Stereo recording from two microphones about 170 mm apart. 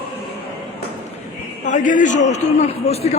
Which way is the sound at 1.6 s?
50° left (ahead or behind).